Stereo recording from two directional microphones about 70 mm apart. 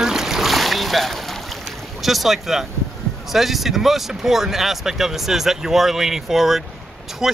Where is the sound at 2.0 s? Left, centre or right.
Centre.